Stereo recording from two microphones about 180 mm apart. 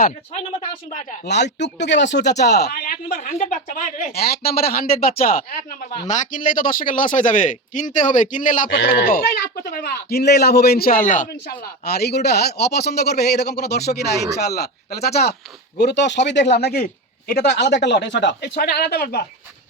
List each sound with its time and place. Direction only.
1.2 s a man's voice: 70° left (ahead or behind); by 8.7 s 45° left (ahead or behind)
8.7 s a man's voice: 60° left (ahead or behind); by 11.3 s 45° left (ahead or behind)
11.6 s a man's voice: 60° left (ahead or behind)